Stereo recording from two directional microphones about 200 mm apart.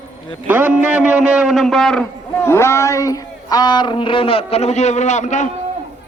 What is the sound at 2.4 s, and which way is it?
Speech, 15° left (ahead or behind).